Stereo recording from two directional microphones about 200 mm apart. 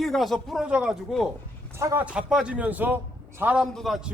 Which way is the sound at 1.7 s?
10° right (ahead or behind).